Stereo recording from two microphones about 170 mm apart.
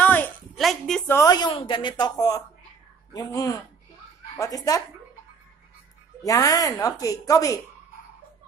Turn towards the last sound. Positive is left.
turn(degrees=20)  # may be behind; listen again after turning